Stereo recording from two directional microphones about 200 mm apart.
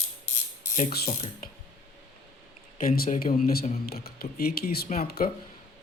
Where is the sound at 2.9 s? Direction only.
45° left (ahead or behind).